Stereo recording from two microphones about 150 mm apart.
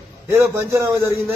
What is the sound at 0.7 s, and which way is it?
Speech, 20° right (ahead or behind).